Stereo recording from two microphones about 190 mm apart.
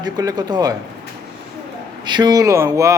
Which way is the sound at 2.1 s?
20° right (ahead or behind).